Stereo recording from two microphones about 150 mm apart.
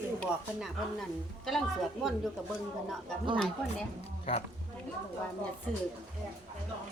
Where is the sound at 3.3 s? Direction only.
5° left (ahead or behind).